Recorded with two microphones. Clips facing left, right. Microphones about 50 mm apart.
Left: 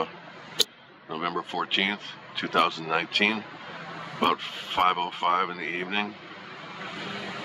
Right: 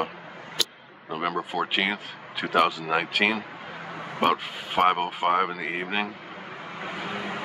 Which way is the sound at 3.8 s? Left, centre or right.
Right.